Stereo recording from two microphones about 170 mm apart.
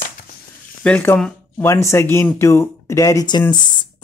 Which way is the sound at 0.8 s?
10° left (ahead or behind).